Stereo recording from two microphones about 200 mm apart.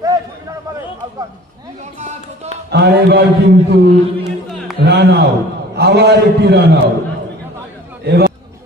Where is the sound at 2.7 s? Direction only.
55° right (ahead or behind).